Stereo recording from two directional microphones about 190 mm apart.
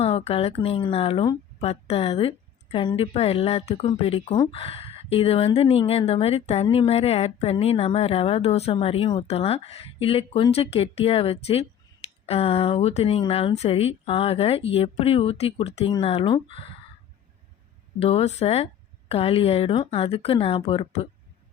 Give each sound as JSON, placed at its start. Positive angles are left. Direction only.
{"t": 0.0, "sound": "speech", "side_deg": 30}
{"t": 18.0, "sound": "speech", "side_deg": 30}